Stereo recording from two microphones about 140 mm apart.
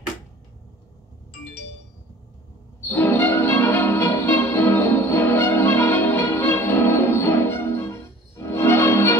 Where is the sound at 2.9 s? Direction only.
15° left (ahead or behind).